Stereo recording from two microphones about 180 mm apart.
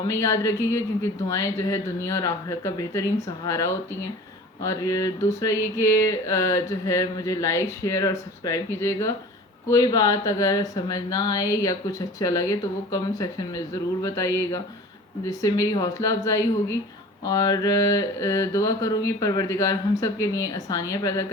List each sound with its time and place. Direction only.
0.1 s mantra: 15° left (ahead or behind)